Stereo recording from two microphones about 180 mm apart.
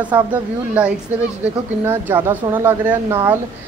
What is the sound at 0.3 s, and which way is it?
Speech, 5° right (ahead or behind).